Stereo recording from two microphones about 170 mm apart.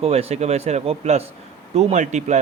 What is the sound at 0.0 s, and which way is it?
Speech, 35° right (ahead or behind).